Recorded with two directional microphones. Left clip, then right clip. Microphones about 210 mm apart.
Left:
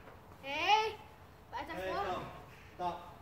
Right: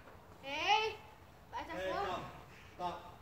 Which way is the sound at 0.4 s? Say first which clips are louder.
Left 3 dB; 30° left (ahead or behind).